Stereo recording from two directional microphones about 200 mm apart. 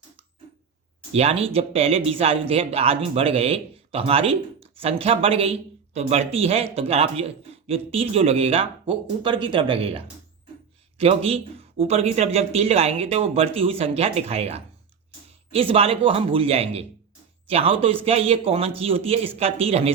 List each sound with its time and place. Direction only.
1.1 s speech: 30° right (ahead or behind)